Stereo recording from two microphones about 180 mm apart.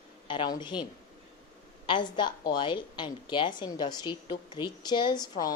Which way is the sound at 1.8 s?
25° left (ahead or behind).